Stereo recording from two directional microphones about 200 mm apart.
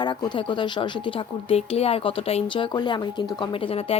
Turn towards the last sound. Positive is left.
turn(degrees=30)  # may be behind; listen again after turning